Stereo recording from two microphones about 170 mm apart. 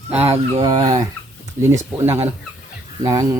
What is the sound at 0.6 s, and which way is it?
Speech, 25° right (ahead or behind).